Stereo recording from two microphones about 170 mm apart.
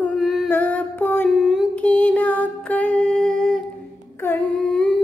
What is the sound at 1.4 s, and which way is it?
Music, centre (ahead or behind).